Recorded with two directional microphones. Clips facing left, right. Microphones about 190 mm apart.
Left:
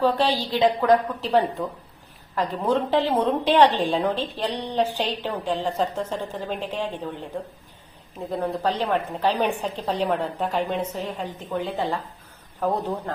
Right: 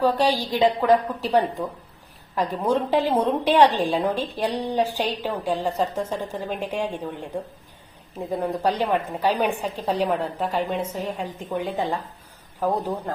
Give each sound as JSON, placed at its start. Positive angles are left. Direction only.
{"t": 0.0, "sound": "a woman's voice", "side_deg": -10}
{"t": 8.6, "sound": "a woman's voice", "side_deg": -10}